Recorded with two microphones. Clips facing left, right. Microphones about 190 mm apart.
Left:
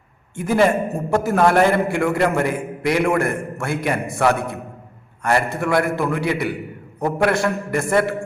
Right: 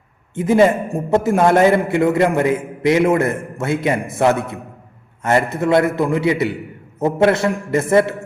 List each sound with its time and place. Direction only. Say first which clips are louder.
0.3 s a man's voice: right 3 dB; 20° right (ahead or behind)